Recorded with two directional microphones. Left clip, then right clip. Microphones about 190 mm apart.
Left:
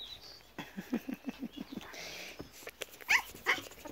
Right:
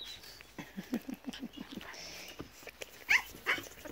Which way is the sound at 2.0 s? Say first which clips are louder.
Left 2 dB; 15° left (ahead or behind).